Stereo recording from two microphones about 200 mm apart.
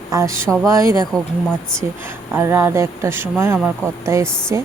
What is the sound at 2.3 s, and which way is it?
Speech, 10° right (ahead or behind).